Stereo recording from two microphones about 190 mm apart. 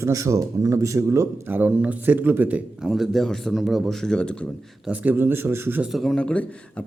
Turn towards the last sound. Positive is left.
turn(degrees=5)  # may be behind; listen again after turning